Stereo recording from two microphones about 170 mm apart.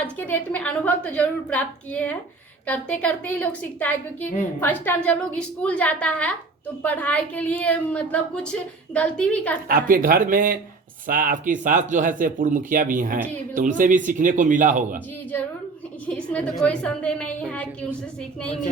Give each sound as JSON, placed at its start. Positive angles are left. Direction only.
{"t": 0.0, "sound": "a woman's voice", "side_deg": 10}
{"t": 9.6, "sound": "speech", "side_deg": -55}
{"t": 16.0, "sound": "a woman's voice", "side_deg": 5}